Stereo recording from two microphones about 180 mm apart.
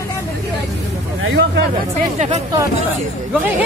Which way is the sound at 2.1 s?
40° right (ahead or behind).